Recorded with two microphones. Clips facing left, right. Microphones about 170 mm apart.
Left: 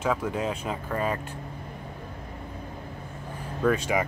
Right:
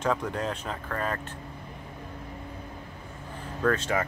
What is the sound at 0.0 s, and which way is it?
Speech, 5° left (ahead or behind).